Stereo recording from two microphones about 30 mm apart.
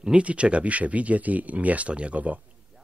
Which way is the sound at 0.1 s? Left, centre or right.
Right.